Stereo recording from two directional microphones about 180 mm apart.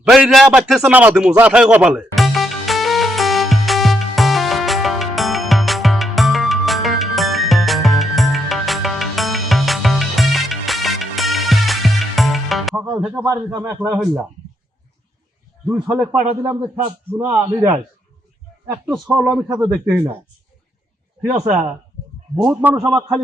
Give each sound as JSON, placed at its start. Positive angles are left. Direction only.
{"t": 0.0, "sound": "speech", "side_deg": -5}
{"t": 0.7, "sound": "music", "side_deg": -5}
{"t": 13.1, "sound": "a man's voice", "side_deg": -15}
{"t": 15.6, "sound": "a man's voice", "side_deg": -5}
{"t": 16.4, "sound": "a man's voice", "side_deg": -25}
{"t": 18.9, "sound": "speech", "side_deg": -5}
{"t": 21.5, "sound": "a man's voice", "side_deg": -10}